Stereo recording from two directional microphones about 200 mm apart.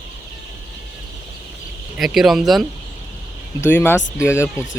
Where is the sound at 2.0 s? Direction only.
Centre (ahead or behind).